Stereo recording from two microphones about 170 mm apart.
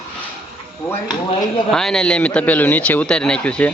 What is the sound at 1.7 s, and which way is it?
A man's voice, 5° left (ahead or behind).